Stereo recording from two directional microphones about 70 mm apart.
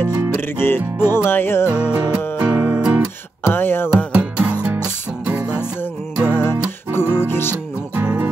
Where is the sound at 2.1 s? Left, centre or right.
Right.